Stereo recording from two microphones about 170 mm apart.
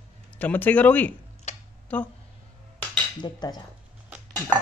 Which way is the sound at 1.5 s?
40° left (ahead or behind).